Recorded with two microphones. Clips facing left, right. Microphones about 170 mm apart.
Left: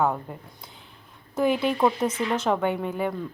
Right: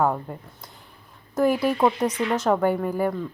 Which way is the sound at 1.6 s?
10° right (ahead or behind).